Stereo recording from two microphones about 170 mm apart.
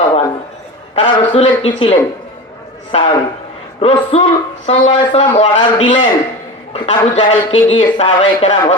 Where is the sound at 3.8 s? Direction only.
35° left (ahead or behind).